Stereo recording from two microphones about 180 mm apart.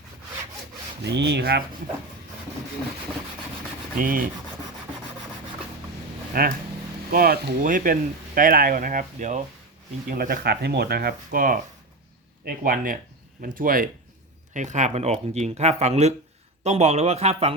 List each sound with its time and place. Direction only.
1.0 s speech: 70° right (ahead or behind)
3.9 s rub: 50° right (ahead or behind)
6.3 s speech: 50° right (ahead or behind)
10.1 s speech: 55° right (ahead or behind); by 17.5 s 35° right (ahead or behind)